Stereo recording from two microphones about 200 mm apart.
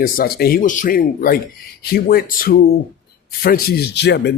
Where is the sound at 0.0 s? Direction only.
50° left (ahead or behind).